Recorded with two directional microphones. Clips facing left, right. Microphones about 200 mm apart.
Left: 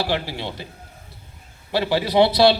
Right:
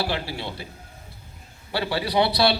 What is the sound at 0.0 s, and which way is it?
Speech, 20° left (ahead or behind).